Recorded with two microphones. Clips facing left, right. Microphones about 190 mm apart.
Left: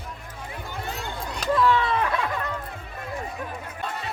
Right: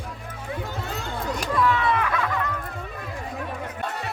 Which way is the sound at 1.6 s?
30° left (ahead or behind).